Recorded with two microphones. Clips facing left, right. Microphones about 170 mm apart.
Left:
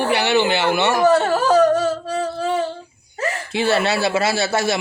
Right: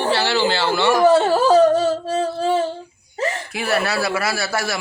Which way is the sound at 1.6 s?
15° right (ahead or behind).